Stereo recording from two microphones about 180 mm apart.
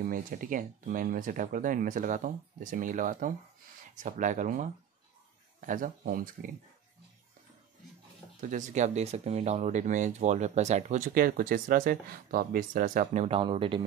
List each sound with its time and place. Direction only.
0.1 s speech: 50° right (ahead or behind)
8.4 s speech: 45° right (ahead or behind); by 13.8 s 30° right (ahead or behind)